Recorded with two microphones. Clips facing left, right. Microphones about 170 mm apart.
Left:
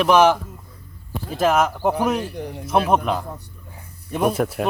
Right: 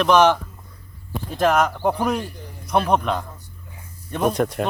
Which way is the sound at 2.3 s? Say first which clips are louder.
Left 10 dB; 65° left (ahead or behind).